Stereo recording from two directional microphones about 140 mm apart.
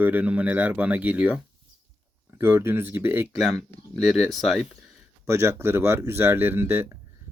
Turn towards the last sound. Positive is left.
turn(degrees=-15)  # may be behind; listen again after turning